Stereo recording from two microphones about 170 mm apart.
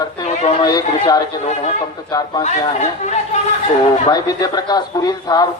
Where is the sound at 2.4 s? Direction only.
45° left (ahead or behind).